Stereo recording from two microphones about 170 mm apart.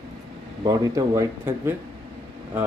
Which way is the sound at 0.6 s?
20° right (ahead or behind).